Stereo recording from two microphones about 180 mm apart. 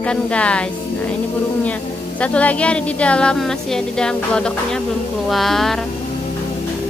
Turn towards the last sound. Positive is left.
turn(degrees=0)  # may be behind; listen again after turning